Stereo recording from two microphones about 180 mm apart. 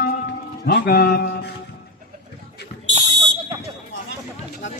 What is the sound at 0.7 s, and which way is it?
Speech, 55° left (ahead or behind).